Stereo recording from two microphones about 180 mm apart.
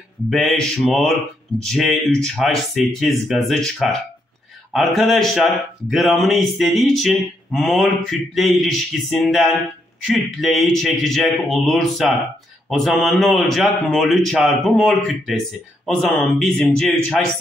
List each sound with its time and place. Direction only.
0.3 s speech: centre (ahead or behind)
16.5 s speech: 5° left (ahead or behind)